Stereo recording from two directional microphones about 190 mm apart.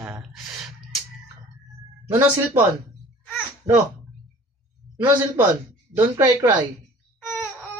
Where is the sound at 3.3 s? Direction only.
10° right (ahead or behind).